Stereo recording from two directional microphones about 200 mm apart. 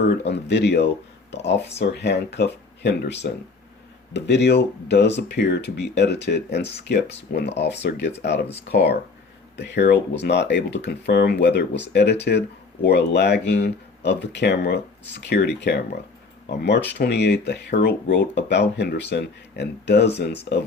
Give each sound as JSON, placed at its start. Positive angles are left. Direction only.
{"t": 0.0, "sound": "speech", "side_deg": 55}